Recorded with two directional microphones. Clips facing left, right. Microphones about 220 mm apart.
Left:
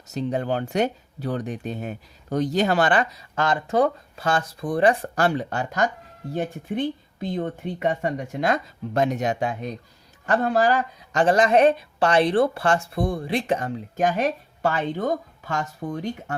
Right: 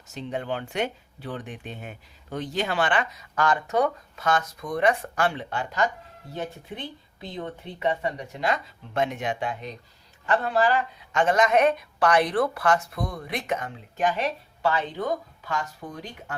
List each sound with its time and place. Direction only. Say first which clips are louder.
0.1 s speech: left 6 dB; 40° left (ahead or behind)